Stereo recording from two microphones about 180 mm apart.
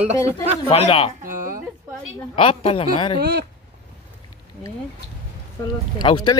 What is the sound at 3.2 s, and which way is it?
Speech, 65° right (ahead or behind).